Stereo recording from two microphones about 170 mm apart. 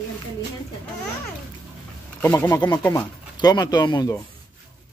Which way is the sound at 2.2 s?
20° left (ahead or behind).